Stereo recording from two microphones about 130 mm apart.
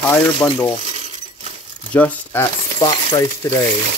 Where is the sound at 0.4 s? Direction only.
20° left (ahead or behind).